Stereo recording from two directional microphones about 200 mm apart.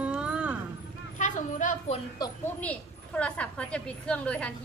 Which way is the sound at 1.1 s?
40° left (ahead or behind).